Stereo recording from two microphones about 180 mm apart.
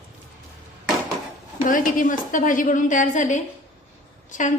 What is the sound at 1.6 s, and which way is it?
A woman's voice, 50° left (ahead or behind).